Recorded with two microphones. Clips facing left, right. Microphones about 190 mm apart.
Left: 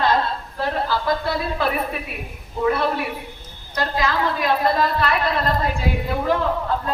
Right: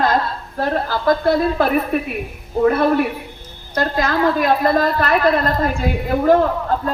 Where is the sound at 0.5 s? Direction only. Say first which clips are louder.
Right 4 dB; 50° right (ahead or behind).